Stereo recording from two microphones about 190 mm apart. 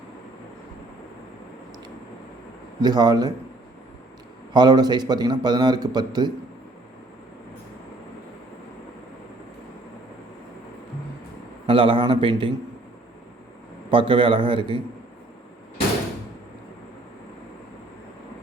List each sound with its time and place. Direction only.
2.8 s a man's voice: 20° right (ahead or behind)
4.5 s a man's voice: 20° right (ahead or behind)
11.6 s a man's voice: 25° right (ahead or behind)
13.9 s a man's voice: 25° right (ahead or behind)